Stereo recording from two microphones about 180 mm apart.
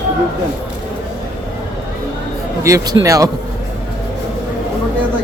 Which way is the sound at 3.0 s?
20° right (ahead or behind).